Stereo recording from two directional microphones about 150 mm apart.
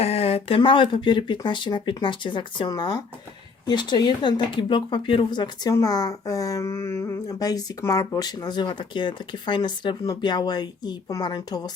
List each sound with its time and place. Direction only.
0.0 s speech: 45° left (ahead or behind); by 11.7 s 25° left (ahead or behind)